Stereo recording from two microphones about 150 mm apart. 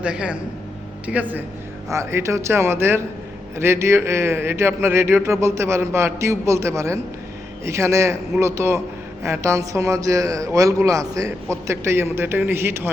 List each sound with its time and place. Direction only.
0.0 s a man's voice: 5° right (ahead or behind)